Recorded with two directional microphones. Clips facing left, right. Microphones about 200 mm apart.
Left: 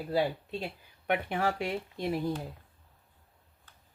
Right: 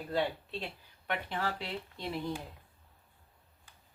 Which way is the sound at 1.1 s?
55° left (ahead or behind).